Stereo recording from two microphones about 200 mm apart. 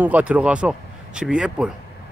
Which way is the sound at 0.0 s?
5° right (ahead or behind).